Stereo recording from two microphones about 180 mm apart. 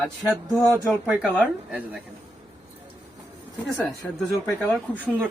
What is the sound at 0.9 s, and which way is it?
Speech, 5° right (ahead or behind).